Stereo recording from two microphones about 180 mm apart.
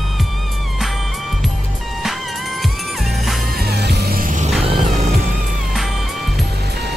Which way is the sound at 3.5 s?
65° right (ahead or behind).